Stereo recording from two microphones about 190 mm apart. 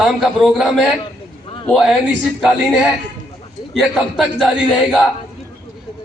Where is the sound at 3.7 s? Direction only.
Centre (ahead or behind).